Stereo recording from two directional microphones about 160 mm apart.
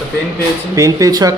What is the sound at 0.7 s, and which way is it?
Speech, 20° right (ahead or behind).